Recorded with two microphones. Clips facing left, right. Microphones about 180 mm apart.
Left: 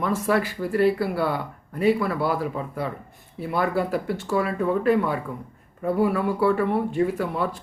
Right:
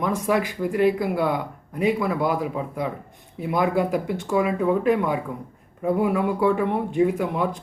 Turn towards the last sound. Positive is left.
turn(degrees=-15)  # may be behind; listen again after turning